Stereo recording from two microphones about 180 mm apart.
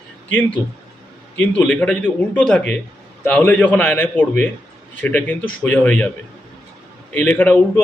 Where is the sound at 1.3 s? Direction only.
5° left (ahead or behind).